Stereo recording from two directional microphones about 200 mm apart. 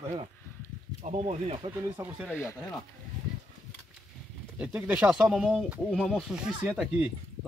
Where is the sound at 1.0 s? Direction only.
35° right (ahead or behind).